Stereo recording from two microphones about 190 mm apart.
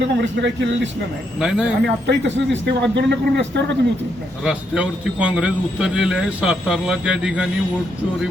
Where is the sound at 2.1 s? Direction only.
70° right (ahead or behind).